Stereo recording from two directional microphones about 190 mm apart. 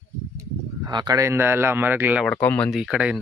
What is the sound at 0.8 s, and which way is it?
Speech, 20° right (ahead or behind).